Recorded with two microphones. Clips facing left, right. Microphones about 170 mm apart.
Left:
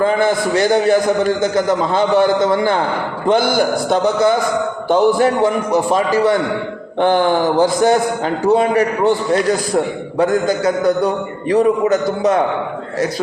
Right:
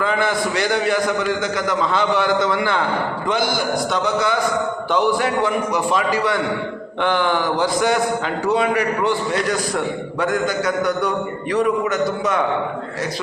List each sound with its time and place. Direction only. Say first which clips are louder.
0.0 s a man's voice: left 5 dB; 40° left (ahead or behind)
3.2 s a man's voice: left 8 dB; 55° left (ahead or behind); by 12.4 s 35° left (ahead or behind)